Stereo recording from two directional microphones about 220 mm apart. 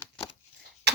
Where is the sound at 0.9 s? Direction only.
50° right (ahead or behind).